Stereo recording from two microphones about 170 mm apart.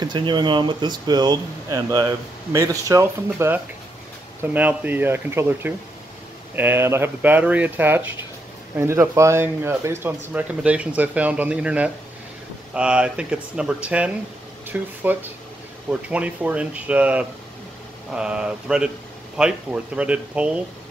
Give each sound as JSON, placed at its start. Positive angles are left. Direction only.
{"t": 0.0, "sound": "speech", "side_deg": -25}